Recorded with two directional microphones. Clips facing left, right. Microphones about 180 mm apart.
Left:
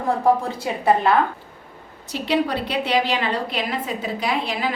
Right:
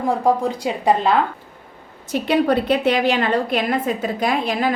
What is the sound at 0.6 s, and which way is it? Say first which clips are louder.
Speech: even; 20° right (ahead or behind).